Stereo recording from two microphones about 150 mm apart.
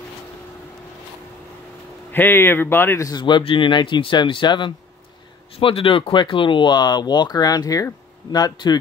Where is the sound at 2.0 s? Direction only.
15° left (ahead or behind).